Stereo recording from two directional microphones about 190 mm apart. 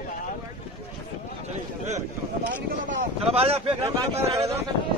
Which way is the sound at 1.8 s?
35° right (ahead or behind).